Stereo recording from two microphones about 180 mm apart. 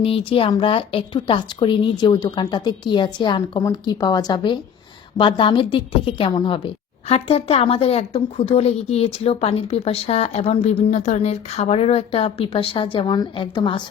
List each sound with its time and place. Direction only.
0.0 s a woman's voice: 30° left (ahead or behind)